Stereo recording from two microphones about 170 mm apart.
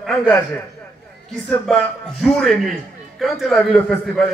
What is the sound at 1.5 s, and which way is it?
A man's voice, 5° left (ahead or behind).